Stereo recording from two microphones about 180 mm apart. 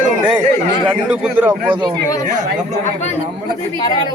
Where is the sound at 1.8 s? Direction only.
25° right (ahead or behind).